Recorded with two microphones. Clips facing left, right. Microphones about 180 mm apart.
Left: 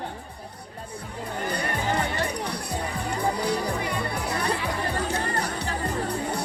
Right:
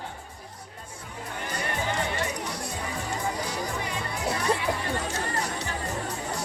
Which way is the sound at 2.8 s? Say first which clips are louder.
Left 4 dB; 35° left (ahead or behind).